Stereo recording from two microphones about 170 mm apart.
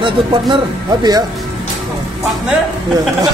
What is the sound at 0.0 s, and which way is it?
Speech, 30° right (ahead or behind).